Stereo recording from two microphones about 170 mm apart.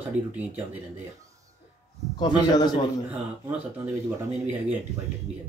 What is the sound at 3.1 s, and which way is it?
Speech, 10° right (ahead or behind).